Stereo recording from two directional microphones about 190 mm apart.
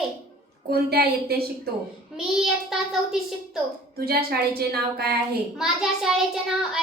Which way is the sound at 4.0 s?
55° right (ahead or behind).